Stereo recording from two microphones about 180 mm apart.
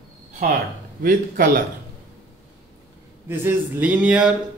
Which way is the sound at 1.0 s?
50° right (ahead or behind).